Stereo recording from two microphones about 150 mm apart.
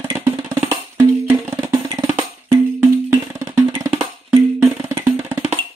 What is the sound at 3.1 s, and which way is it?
Music, 15° right (ahead or behind).